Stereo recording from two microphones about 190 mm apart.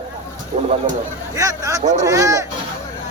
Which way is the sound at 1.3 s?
15° right (ahead or behind).